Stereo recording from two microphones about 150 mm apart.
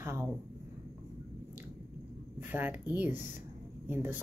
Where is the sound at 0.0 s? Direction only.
15° right (ahead or behind).